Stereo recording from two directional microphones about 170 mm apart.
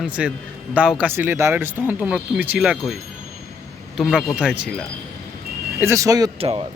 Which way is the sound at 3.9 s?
5° right (ahead or behind).